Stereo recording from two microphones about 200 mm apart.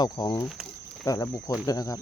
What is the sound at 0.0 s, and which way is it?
Speech, 20° left (ahead or behind).